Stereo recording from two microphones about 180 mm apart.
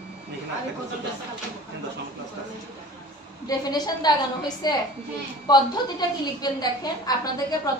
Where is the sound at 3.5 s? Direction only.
20° left (ahead or behind).